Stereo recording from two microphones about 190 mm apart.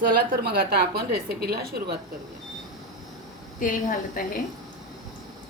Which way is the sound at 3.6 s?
45° left (ahead or behind).